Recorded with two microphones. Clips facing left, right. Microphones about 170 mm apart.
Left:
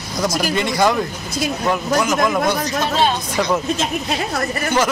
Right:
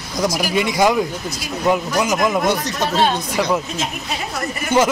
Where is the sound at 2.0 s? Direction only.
20° right (ahead or behind).